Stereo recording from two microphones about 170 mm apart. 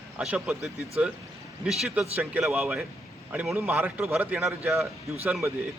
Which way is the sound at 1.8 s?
5° right (ahead or behind).